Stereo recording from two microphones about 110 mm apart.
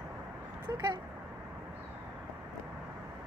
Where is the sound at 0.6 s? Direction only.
40° right (ahead or behind).